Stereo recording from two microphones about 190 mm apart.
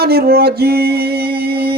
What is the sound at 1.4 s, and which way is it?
Music, 55° right (ahead or behind).